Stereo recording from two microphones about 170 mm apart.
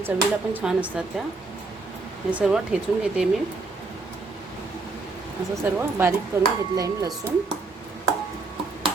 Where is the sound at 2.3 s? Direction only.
5° right (ahead or behind).